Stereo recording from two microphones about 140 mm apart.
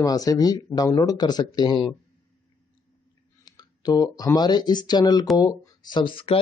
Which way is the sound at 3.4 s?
30° left (ahead or behind).